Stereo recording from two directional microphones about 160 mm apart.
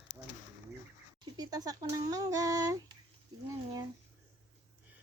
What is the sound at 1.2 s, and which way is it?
Speech, 25° right (ahead or behind).